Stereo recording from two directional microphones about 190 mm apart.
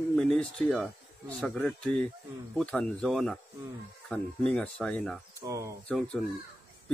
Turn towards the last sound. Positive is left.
turn(degrees=5)  # may be behind; listen again after turning